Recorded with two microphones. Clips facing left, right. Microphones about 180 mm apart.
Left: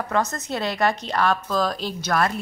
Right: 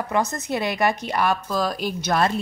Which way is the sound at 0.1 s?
10° right (ahead or behind).